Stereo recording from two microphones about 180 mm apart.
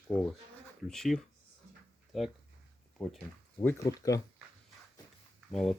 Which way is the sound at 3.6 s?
20° left (ahead or behind).